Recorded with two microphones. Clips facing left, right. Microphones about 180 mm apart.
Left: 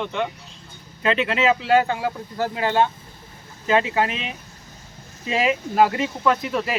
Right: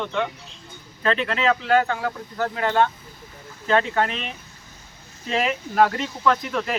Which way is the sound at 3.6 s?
10° left (ahead or behind).